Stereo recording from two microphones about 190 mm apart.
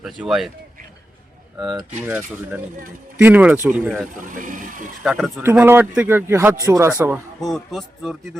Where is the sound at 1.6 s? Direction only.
20° right (ahead or behind).